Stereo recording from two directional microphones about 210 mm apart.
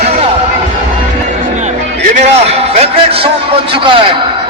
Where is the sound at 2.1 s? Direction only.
30° right (ahead or behind).